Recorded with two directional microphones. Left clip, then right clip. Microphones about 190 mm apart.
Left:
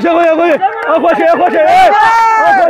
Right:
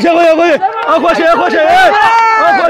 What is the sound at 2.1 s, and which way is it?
Run, 55° left (ahead or behind).